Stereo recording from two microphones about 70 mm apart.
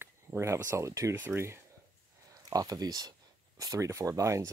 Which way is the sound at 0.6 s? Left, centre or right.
Right.